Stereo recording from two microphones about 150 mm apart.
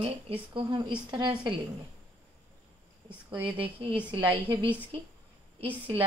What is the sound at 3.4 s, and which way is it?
Speech, 35° right (ahead or behind).